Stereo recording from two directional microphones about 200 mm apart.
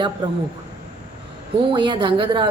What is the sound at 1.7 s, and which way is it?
Speech, 25° right (ahead or behind).